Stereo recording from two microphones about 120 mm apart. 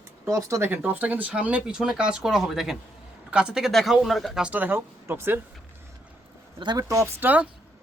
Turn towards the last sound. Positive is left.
turn(degrees=-15)  # may be behind; listen again after turning